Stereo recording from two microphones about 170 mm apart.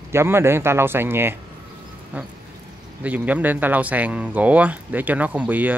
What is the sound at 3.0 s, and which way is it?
Speech, 10° right (ahead or behind).